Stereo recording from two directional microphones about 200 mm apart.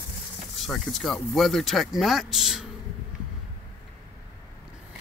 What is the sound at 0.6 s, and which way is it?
Speech, centre (ahead or behind).